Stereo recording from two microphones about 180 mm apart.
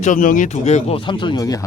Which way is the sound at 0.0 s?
45° left (ahead or behind).